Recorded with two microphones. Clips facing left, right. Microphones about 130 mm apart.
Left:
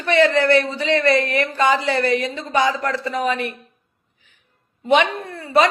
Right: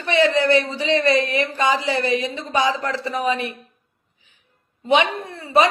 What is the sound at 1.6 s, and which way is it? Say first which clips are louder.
Speech: left 3 dB; 60° left (ahead or behind).